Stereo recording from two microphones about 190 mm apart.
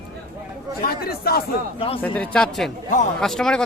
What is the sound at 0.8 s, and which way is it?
Speech, 55° left (ahead or behind).